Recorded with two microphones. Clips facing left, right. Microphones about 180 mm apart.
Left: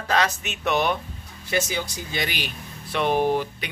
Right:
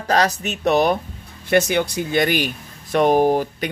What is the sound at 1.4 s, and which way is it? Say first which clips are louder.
Speech: right 9 dB; 60° right (ahead or behind).